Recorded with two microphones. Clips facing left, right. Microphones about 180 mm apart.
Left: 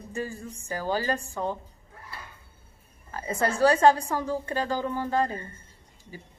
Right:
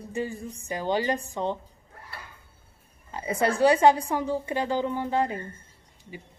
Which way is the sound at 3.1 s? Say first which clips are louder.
Right 2 dB; 20° right (ahead or behind).